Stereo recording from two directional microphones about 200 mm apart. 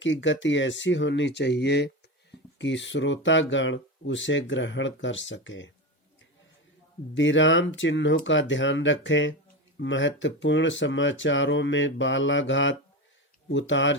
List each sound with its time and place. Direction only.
0.0 s speech: 65° left (ahead or behind)
7.1 s speech: 70° left (ahead or behind)